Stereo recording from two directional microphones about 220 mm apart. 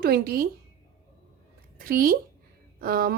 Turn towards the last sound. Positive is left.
turn(degrees=-40)  # may be behind; listen again after turning